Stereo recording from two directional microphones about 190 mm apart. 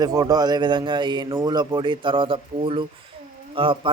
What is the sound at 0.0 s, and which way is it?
A man's voice, 20° right (ahead or behind).